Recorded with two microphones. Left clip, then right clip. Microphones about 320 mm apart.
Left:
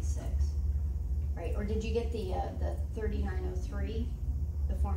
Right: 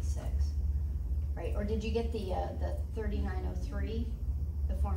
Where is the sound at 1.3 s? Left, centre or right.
Centre.